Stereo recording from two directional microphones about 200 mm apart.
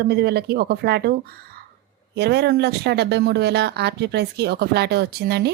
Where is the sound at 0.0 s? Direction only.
55° right (ahead or behind).